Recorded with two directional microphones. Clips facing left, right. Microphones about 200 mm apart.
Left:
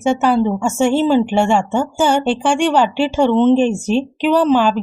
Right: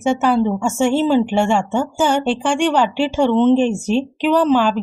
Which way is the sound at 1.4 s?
30° left (ahead or behind).